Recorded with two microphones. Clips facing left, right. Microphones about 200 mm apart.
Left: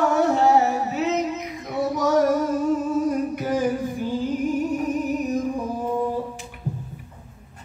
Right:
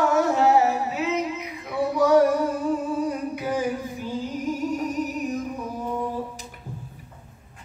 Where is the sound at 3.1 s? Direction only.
45° left (ahead or behind).